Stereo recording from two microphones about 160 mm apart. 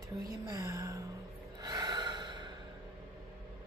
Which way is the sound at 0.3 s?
20° right (ahead or behind).